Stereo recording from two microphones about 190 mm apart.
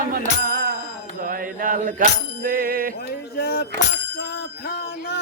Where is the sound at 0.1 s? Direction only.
50° right (ahead or behind).